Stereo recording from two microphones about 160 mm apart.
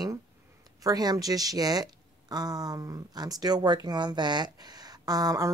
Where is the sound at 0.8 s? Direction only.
25° right (ahead or behind).